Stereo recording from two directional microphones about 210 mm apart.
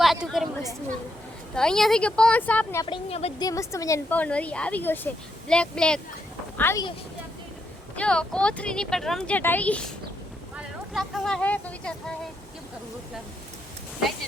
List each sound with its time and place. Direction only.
0.0 s chatter: centre (ahead or behind)
1.5 s speech: 5° left (ahead or behind)
2.8 s speech: 25° left (ahead or behind)
3.4 s a woman's voice: 15° left (ahead or behind)
7.9 s speech: 5° left (ahead or behind)
10.9 s speech: centre (ahead or behind)